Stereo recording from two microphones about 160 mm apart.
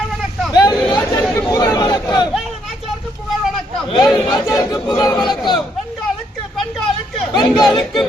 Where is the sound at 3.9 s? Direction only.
25° left (ahead or behind).